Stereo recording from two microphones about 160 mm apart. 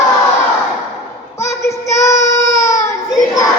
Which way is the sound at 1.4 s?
15° left (ahead or behind).